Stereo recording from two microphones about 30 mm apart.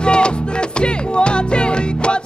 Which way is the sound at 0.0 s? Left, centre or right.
Left.